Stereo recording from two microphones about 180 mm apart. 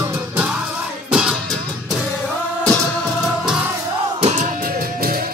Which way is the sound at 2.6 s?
Centre (ahead or behind).